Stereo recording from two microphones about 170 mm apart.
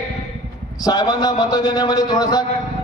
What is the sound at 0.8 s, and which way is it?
A man's voice, 20° left (ahead or behind).